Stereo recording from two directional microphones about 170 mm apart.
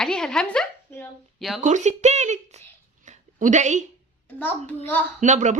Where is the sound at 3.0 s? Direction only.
45° right (ahead or behind).